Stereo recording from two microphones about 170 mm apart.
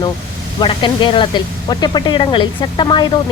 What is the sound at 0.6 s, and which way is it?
Speech, 30° left (ahead or behind).